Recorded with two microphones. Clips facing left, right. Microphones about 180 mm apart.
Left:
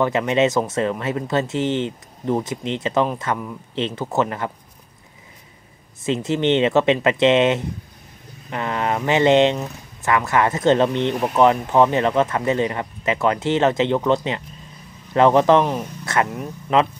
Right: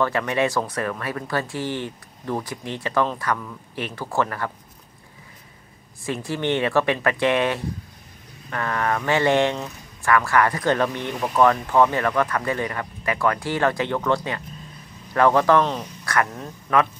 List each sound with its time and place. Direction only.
0.0 s speech: 20° left (ahead or behind)
6.0 s speech: 20° left (ahead or behind)